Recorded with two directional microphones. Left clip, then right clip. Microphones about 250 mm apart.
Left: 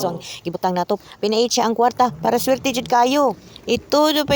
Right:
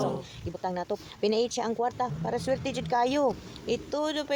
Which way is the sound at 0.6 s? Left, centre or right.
Left.